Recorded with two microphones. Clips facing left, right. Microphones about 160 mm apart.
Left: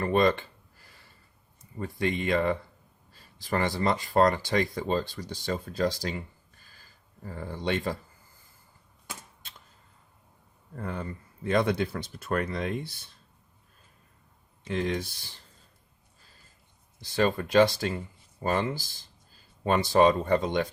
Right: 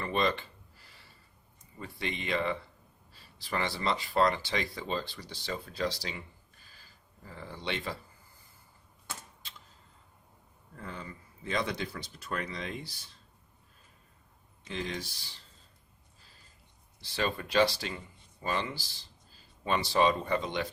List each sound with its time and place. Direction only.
0.0 s a sound: 45° left (ahead or behind)
1.8 s speech: 50° left (ahead or behind)
6.7 s a sound: 45° left (ahead or behind)
10.8 s speech: 55° left (ahead or behind)
14.7 s speech: 55° left (ahead or behind)
17.0 s speech: 45° left (ahead or behind)